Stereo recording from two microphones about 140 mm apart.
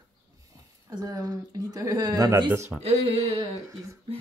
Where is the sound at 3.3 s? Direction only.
25° right (ahead or behind).